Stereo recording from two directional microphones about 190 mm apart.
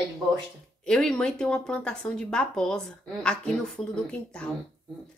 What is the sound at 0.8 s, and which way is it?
A woman's voice, 5° left (ahead or behind).